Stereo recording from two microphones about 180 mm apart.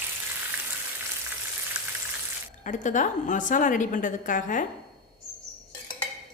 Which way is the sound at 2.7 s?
45° left (ahead or behind).